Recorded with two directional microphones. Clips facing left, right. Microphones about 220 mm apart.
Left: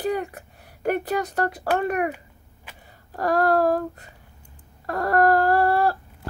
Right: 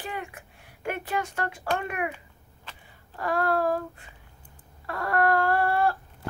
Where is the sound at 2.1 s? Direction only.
10° left (ahead or behind).